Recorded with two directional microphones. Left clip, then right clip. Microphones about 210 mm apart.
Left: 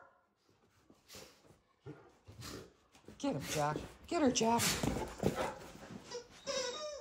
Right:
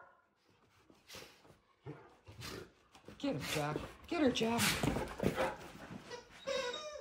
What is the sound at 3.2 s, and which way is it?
Speech, 5° left (ahead or behind).